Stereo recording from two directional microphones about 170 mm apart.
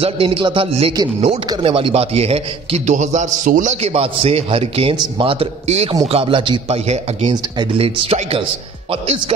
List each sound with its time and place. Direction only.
0.0 s a man's voice: 30° right (ahead or behind)